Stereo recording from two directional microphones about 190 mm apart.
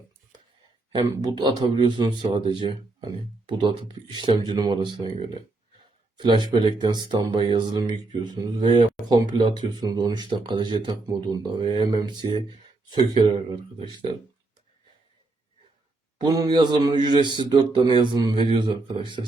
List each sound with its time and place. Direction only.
1.1 s speech: 20° right (ahead or behind)
6.1 s speech: 25° right (ahead or behind)
16.1 s speech: 20° right (ahead or behind)